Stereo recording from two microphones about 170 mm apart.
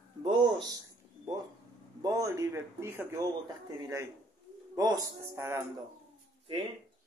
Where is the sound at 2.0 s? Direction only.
20° right (ahead or behind).